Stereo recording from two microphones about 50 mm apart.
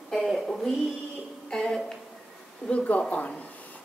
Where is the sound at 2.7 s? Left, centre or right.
Left.